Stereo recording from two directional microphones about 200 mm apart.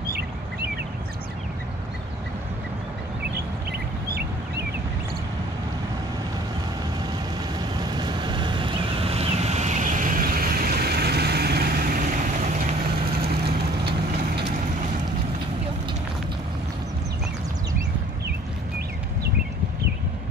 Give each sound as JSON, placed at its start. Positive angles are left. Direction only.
{"t": 7.8, "sound": "vehicle", "side_deg": -20}